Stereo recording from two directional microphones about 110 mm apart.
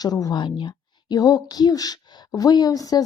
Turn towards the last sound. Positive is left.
turn(degrees=35)  # may be behind; listen again after turning